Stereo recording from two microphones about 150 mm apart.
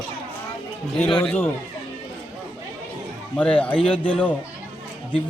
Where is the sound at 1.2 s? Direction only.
10° left (ahead or behind).